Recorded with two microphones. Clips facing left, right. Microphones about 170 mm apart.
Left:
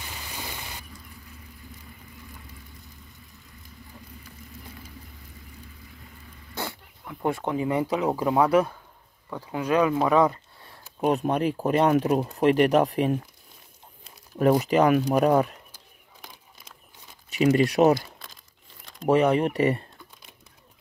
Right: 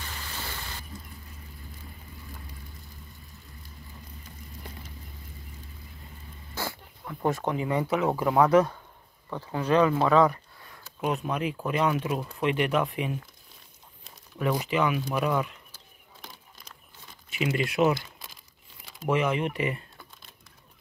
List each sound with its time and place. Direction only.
0.0 s a sound: 15° left (ahead or behind)
6.5 s dog: 20° left (ahead or behind)
7.1 s speech: 10° left (ahead or behind)
11.0 s speech: 35° left (ahead or behind)
14.3 s a sound: 40° left (ahead or behind)
14.7 s speech: 40° left (ahead or behind)
17.3 s speech: 40° left (ahead or behind)
19.0 s speech: 35° left (ahead or behind)